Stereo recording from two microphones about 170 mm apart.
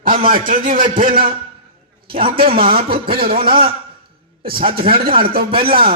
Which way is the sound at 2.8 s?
30° right (ahead or behind).